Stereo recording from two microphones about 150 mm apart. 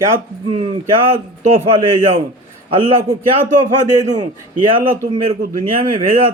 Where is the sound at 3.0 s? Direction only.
65° right (ahead or behind).